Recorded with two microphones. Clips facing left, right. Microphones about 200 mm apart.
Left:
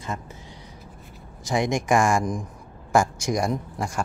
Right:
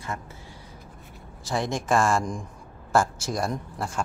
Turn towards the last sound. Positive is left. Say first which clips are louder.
# left 3 dB
turn(degrees=10)  # may be behind; listen again after turning